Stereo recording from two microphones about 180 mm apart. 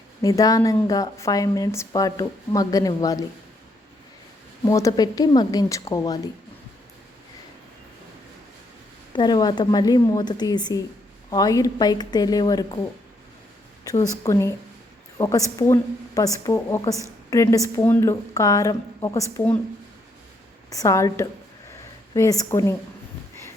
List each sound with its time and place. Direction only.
0.2 s a woman's voice: 20° left (ahead or behind)
4.6 s a woman's voice: 20° left (ahead or behind)
9.1 s a woman's voice: 20° left (ahead or behind)
14.0 s a woman's voice: 15° left (ahead or behind)
20.7 s a woman's voice: 20° left (ahead or behind)